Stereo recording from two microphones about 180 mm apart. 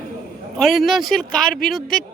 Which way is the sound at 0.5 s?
Centre (ahead or behind).